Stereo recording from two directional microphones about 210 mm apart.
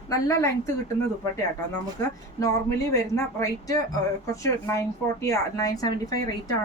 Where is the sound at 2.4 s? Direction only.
15° left (ahead or behind).